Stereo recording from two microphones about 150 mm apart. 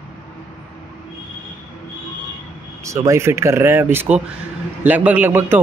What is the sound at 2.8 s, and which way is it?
A man's voice, 20° right (ahead or behind).